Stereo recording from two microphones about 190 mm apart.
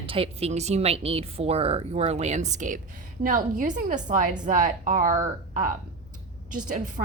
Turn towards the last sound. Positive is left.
turn(degrees=-45)  # may be behind; listen again after turning